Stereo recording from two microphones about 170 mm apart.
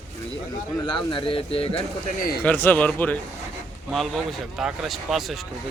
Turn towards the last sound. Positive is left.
turn(degrees=0)  # may be behind; listen again after turning